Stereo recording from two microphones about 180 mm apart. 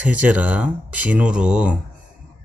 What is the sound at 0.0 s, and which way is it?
Speech, 10° right (ahead or behind).